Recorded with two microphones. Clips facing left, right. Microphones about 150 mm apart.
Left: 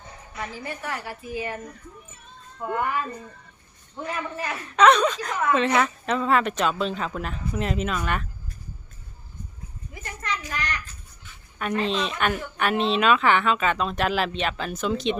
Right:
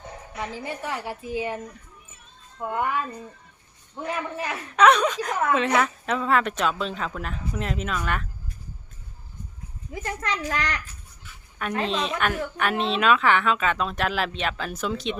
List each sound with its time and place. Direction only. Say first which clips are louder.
0.4 s a woman's voice: right 1 dB; 25° right (ahead or behind)
4.4 s a woman's voice: left 1 dB; 10° right (ahead or behind)
9.9 s a woman's voice: right 3 dB; 90° right
11.8 s a woman's voice: even; centre (ahead or behind)